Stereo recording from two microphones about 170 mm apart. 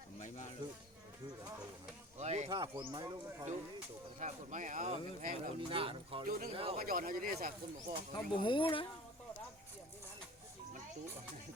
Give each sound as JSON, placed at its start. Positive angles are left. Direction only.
{"t": 2.1, "sound": "a sound", "side_deg": -40}
{"t": 2.5, "sound": "speech", "side_deg": -25}
{"t": 4.2, "sound": "speech", "side_deg": -45}
{"t": 5.5, "sound": "speech", "side_deg": -30}
{"t": 6.2, "sound": "speech", "side_deg": -55}
{"t": 6.5, "sound": "speech", "side_deg": -35}
{"t": 6.8, "sound": "speech", "side_deg": -60}
{"t": 8.1, "sound": "speech", "side_deg": 30}